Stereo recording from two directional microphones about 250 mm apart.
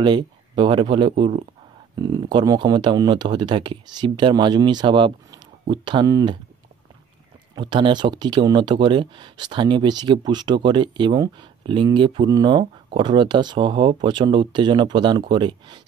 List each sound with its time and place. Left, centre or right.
0.0 s speech: centre
7.5 s speech: centre